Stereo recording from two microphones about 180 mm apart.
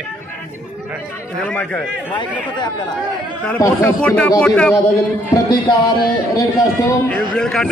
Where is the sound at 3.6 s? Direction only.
10° left (ahead or behind).